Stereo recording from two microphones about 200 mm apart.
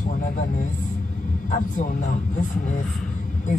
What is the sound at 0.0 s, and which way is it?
Speech, 40° left (ahead or behind).